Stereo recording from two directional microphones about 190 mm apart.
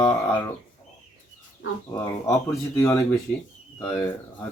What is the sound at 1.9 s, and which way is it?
Speech, 15° left (ahead or behind).